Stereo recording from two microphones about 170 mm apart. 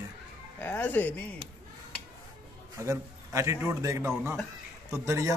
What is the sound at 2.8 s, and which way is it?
A man's voice, 15° right (ahead or behind).